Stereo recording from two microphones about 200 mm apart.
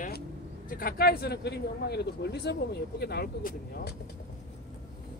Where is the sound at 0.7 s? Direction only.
45° left (ahead or behind).